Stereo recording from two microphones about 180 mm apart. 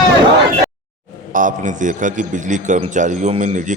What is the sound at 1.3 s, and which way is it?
A man's voice, 45° right (ahead or behind).